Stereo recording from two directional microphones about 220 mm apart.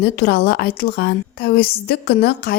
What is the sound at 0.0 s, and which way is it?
A woman's voice, 45° left (ahead or behind).